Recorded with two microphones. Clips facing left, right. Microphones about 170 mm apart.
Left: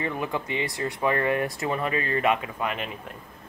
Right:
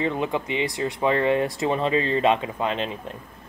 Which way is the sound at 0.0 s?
20° right (ahead or behind).